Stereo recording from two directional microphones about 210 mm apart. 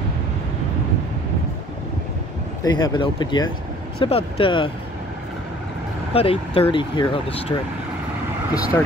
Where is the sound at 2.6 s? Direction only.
20° left (ahead or behind).